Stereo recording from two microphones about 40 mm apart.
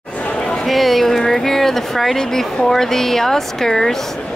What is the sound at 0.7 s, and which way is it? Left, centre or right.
Speech, centre.